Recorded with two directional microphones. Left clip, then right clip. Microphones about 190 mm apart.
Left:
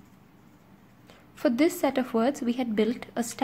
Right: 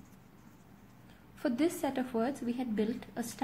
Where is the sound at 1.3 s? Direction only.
35° left (ahead or behind).